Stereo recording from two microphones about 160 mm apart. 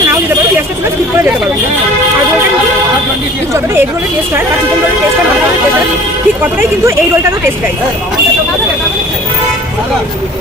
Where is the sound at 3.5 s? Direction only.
15° right (ahead or behind).